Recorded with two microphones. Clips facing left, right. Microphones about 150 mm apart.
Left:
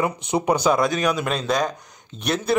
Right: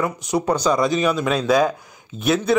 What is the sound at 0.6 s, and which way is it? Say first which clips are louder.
Speech: right 1 dB; 5° left (ahead or behind).